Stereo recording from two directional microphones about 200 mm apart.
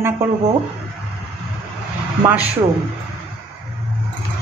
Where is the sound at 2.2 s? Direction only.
5° right (ahead or behind).